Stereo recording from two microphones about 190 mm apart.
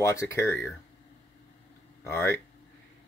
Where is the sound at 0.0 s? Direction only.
15° left (ahead or behind).